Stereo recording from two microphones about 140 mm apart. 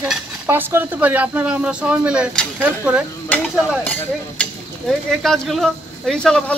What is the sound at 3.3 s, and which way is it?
Speech, 10° left (ahead or behind).